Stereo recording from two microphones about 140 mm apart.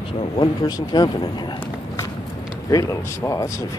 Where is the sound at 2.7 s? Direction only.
25° left (ahead or behind).